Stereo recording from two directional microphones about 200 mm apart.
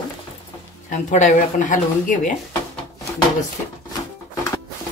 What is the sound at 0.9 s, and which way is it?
Speech, 40° left (ahead or behind).